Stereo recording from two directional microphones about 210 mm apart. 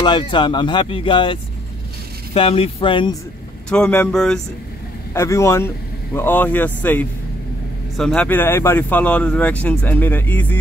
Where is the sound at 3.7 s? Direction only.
5° left (ahead or behind).